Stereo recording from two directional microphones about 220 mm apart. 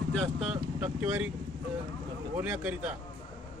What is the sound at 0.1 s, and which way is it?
Speech, centre (ahead or behind).